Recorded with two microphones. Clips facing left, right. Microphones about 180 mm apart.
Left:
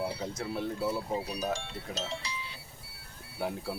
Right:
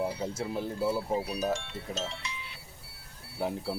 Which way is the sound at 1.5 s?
35° left (ahead or behind).